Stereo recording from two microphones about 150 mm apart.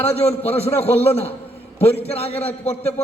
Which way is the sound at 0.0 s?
40° left (ahead or behind).